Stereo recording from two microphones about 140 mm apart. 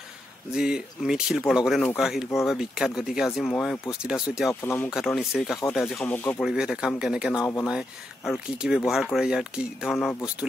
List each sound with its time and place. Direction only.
0.6 s speech: 5° right (ahead or behind)
3.4 s speech: 10° left (ahead or behind)
4.0 s speech: 5° right (ahead or behind)
4.5 s speech: 15° left (ahead or behind)
4.9 s speech: centre (ahead or behind)
5.9 s speech: 15° left (ahead or behind)
6.4 s speech: 5° right (ahead or behind)